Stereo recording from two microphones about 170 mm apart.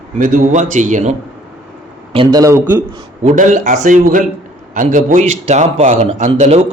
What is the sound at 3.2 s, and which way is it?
A man's voice, 45° right (ahead or behind).